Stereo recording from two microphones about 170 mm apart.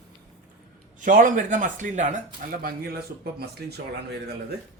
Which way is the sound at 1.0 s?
50° right (ahead or behind).